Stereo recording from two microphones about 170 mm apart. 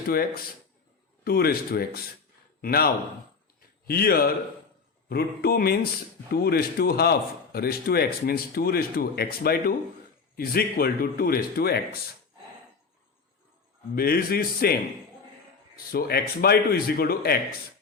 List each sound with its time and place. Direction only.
1.2 s speech: 65° left (ahead or behind)
13.9 s speech: 65° left (ahead or behind)